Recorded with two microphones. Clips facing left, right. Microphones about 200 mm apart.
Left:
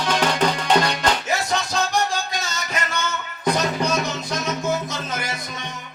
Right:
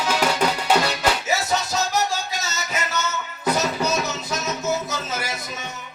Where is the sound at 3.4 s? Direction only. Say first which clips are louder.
Left 1 dB; 5° right (ahead or behind).